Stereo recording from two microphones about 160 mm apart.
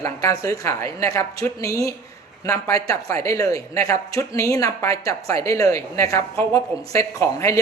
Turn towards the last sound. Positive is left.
turn(degrees=20)  # may be behind; listen again after turning